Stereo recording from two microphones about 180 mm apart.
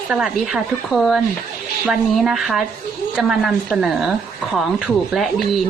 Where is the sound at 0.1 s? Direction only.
Centre (ahead or behind).